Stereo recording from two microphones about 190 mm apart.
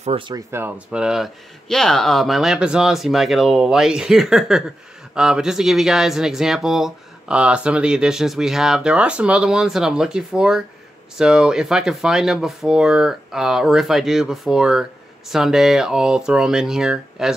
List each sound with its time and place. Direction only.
0.0 s speech: 30° right (ahead or behind)
0.5 s speech: 10° right (ahead or behind)